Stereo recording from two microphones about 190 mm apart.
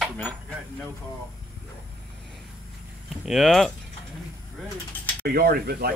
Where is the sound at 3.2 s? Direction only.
Centre (ahead or behind).